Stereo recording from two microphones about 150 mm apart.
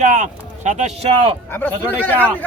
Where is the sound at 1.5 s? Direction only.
10° left (ahead or behind).